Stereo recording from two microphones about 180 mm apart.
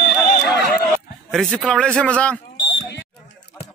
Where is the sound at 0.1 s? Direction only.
Centre (ahead or behind).